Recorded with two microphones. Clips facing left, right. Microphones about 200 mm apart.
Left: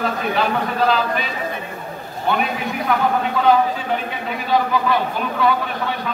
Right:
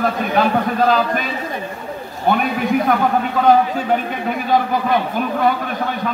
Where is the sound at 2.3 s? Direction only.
45° right (ahead or behind).